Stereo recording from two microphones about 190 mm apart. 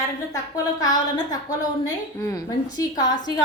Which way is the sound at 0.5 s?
20° left (ahead or behind).